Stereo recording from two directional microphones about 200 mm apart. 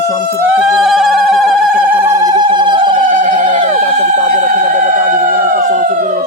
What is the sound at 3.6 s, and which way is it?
Speech, 35° right (ahead or behind).